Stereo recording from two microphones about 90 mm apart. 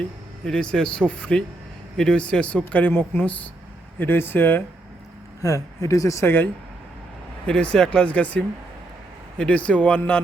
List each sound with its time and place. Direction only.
0.4 s speech: 10° left (ahead or behind)
5.4 s speech: 40° left (ahead or behind); by 6.5 s 25° left (ahead or behind)
7.4 s speech: 10° left (ahead or behind)